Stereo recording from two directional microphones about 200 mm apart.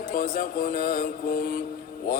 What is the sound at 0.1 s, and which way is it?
A man's voice, 45° left (ahead or behind).